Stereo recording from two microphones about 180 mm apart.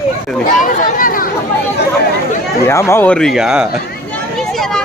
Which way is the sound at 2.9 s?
10° left (ahead or behind).